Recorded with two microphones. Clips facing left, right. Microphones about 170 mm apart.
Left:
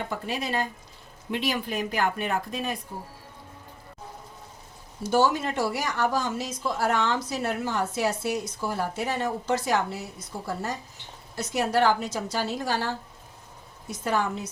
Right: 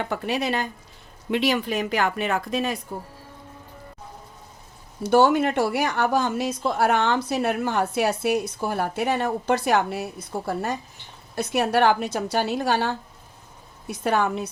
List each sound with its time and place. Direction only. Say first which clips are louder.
0.0 s speech: right 5 dB; 70° right (ahead or behind); by 2.7 s 90° right
5.0 s a woman's voice: right 5 dB; 60° right (ahead or behind)